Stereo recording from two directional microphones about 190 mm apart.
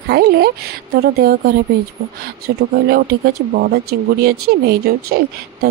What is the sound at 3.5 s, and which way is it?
Speech, 55° right (ahead or behind).